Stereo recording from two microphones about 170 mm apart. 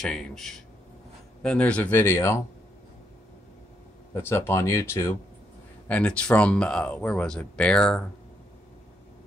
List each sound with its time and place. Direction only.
0.0 s speech: 5° left (ahead or behind)
4.1 s speech: 15° left (ahead or behind)